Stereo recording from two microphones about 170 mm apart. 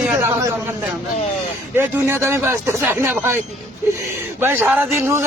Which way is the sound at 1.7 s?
10° right (ahead or behind).